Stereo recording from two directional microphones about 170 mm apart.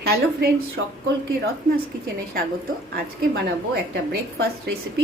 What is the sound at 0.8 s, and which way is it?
Speech, 90° right.